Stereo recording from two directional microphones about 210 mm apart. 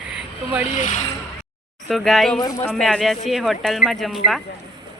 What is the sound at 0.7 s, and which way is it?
Speech, 35° left (ahead or behind).